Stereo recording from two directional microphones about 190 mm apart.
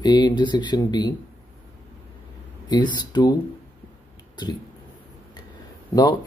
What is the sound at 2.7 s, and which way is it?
Speech, 25° left (ahead or behind).